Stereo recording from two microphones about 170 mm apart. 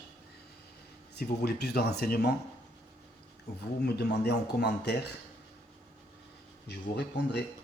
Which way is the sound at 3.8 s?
70° left (ahead or behind).